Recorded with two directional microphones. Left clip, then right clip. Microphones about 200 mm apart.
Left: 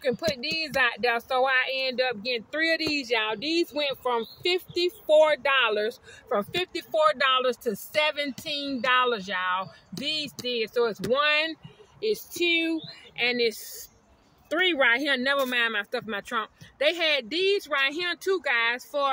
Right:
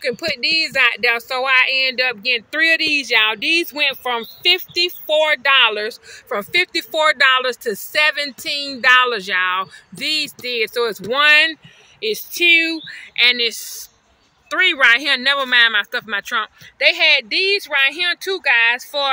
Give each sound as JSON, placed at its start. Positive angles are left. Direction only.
{"t": 0.0, "sound": "speech", "side_deg": -5}
{"t": 6.2, "sound": "speech", "side_deg": -10}
{"t": 13.2, "sound": "speech", "side_deg": 15}